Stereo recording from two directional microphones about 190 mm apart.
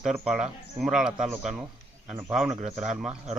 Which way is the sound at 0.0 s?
Centre (ahead or behind).